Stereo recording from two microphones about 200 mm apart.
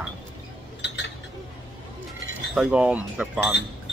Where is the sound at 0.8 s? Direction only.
60° left (ahead or behind).